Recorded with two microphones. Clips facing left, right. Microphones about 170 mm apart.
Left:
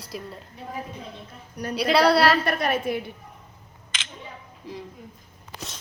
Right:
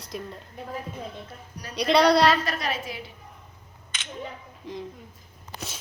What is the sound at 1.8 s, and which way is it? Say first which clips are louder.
Speech: even; 5° left (ahead or behind).